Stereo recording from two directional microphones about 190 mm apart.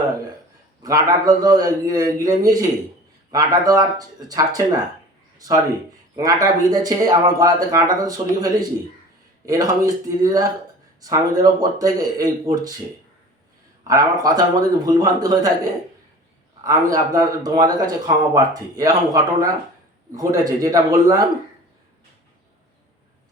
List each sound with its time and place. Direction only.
0.8 s speech: 20° right (ahead or behind)
6.1 s speech: 20° right (ahead or behind)
13.8 s speech: 20° right (ahead or behind)